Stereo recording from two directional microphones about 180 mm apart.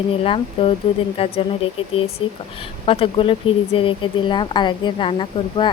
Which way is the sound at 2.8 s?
30° left (ahead or behind).